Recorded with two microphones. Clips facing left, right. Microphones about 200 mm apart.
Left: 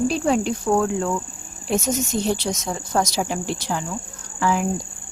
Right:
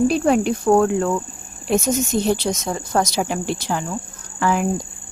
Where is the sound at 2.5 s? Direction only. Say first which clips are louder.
Right 3 dB; 55° right (ahead or behind).